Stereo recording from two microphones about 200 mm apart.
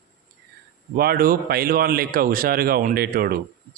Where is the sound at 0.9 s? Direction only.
50° right (ahead or behind).